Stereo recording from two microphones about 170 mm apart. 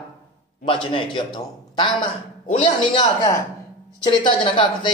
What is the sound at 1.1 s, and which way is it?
A man's voice, 30° left (ahead or behind).